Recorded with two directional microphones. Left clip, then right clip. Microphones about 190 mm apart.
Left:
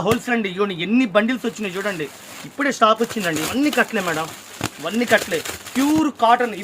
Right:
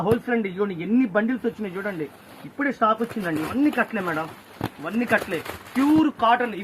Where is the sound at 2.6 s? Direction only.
70° left (ahead or behind).